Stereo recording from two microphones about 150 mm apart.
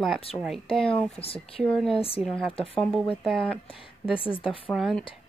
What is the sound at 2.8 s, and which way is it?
Speech, 5° left (ahead or behind).